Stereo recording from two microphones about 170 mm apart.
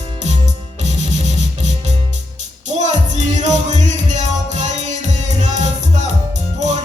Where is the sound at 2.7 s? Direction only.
45° right (ahead or behind).